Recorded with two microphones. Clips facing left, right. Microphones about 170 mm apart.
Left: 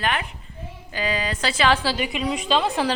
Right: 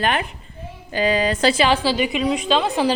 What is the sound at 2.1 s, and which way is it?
Speech, centre (ahead or behind).